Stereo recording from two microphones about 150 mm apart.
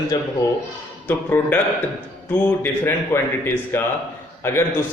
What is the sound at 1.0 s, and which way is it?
Speech, 10° left (ahead or behind).